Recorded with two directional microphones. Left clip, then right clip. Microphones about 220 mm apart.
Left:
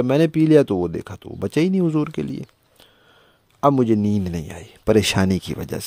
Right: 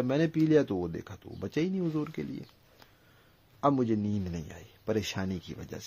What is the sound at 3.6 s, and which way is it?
Speech, 50° left (ahead or behind).